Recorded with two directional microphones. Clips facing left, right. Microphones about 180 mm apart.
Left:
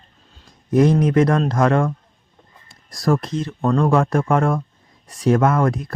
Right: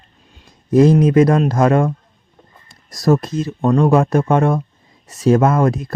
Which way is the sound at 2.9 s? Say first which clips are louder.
Right 4 dB; 20° right (ahead or behind).